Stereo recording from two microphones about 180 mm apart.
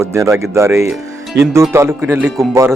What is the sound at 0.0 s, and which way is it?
Speech, 15° right (ahead or behind).